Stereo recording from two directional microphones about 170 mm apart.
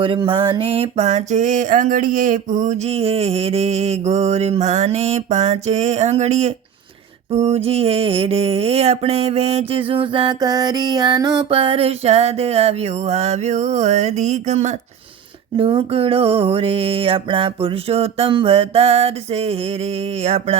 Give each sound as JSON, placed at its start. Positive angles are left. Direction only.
{"t": 0.0, "sound": "mantra", "side_deg": -30}
{"t": 15.5, "sound": "mantra", "side_deg": -30}